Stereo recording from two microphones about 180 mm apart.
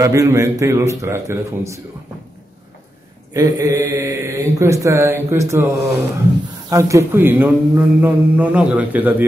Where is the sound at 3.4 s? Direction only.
20° right (ahead or behind).